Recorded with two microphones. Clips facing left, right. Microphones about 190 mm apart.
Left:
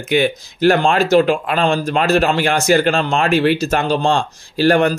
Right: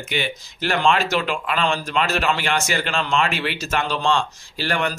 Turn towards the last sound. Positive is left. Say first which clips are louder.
# left 11 dB
turn(degrees=40)  # may be behind; listen again after turning